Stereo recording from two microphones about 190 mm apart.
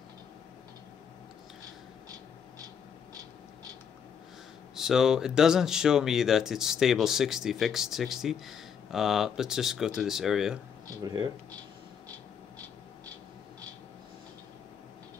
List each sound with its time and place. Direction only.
4.7 s speech: centre (ahead or behind)
11.0 s speech: 20° right (ahead or behind)